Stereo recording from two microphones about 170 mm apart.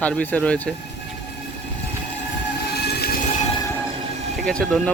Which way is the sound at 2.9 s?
70° left (ahead or behind).